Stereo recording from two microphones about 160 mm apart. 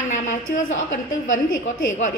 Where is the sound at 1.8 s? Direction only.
50° left (ahead or behind).